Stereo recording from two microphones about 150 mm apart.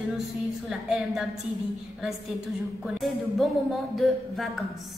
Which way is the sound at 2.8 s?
Centre (ahead or behind).